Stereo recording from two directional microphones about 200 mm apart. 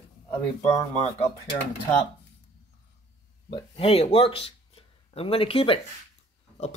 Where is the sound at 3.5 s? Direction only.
30° left (ahead or behind).